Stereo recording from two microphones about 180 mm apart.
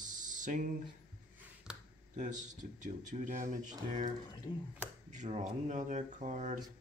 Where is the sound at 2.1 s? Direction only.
45° right (ahead or behind).